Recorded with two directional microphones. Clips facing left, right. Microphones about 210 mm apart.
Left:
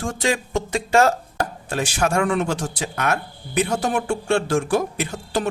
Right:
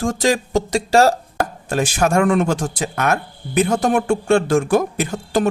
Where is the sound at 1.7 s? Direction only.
50° right (ahead or behind).